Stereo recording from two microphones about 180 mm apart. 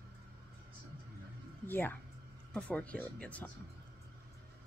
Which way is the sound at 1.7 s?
10° left (ahead or behind).